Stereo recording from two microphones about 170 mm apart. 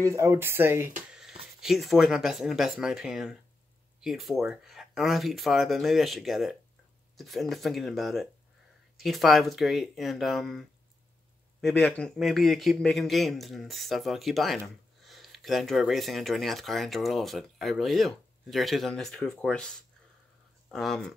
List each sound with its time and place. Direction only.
0.0 s speech: 15° right (ahead or behind)
1.6 s speech: centre (ahead or behind)
20.7 s speech: centre (ahead or behind)